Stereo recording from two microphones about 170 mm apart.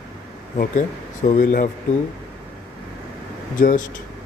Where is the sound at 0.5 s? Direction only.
45° left (ahead or behind).